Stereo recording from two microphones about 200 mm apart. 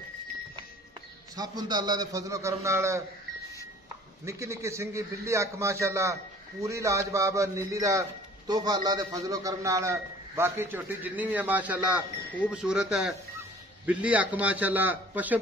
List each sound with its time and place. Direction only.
1.3 s a man's voice: 20° right (ahead or behind)
4.3 s a man's voice: 15° right (ahead or behind)